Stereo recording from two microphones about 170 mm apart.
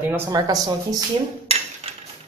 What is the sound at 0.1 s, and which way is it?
Speech, 15° right (ahead or behind).